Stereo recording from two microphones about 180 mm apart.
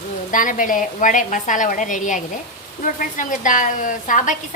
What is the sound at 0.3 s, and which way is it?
A woman's voice, 45° left (ahead or behind).